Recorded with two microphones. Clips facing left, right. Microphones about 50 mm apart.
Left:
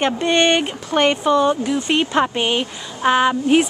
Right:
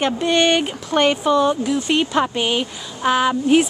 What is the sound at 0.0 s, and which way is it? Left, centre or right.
Speech, left.